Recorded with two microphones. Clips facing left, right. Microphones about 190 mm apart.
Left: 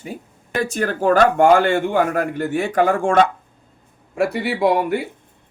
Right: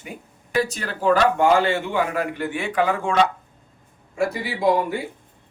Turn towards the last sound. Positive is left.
turn(degrees=65)  # may be behind; listen again after turning